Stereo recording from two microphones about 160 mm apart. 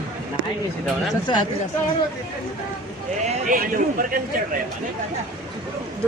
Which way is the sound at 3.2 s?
55° right (ahead or behind).